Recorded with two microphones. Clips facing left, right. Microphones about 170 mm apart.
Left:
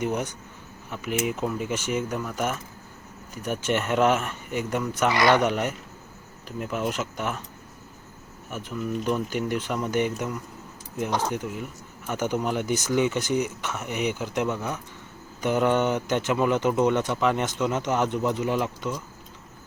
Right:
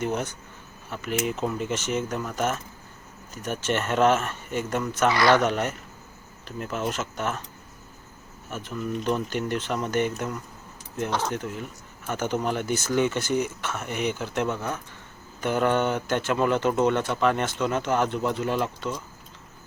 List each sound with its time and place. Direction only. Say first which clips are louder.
0.0 s speech: left 1 dB; 15° left (ahead or behind)
8.4 s speech: even; 10° left (ahead or behind)